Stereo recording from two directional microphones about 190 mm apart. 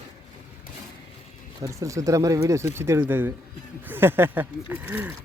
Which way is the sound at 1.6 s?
15° right (ahead or behind).